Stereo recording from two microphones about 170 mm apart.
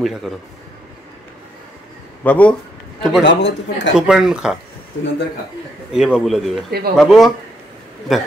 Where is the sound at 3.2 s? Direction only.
90° left.